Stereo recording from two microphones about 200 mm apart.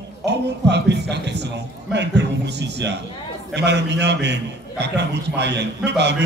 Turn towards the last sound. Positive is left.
turn(degrees=-60)  # may be behind; listen again after turning